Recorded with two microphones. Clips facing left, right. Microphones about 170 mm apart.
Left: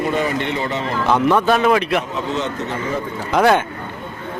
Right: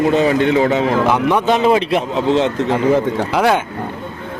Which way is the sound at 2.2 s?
90° right.